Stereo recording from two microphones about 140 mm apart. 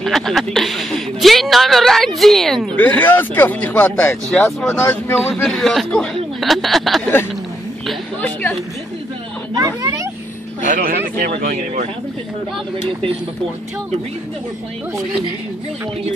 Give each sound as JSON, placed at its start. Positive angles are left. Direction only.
{"t": 0.0, "sound": "a woman's voice", "side_deg": 0}
{"t": 8.2, "sound": "speech", "side_deg": 10}
{"t": 9.7, "sound": "speech", "side_deg": -25}
{"t": 10.6, "sound": "speech", "side_deg": -75}
{"t": 12.7, "sound": "speech", "side_deg": -45}